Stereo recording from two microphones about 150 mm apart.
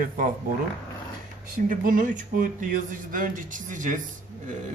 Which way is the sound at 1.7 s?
60° right (ahead or behind).